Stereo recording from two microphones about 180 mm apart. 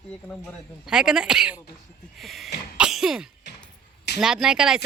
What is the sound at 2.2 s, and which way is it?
Sneeze, centre (ahead or behind).